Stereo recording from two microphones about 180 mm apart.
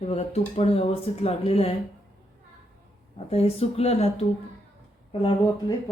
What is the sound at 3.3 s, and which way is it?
Speech, 35° left (ahead or behind).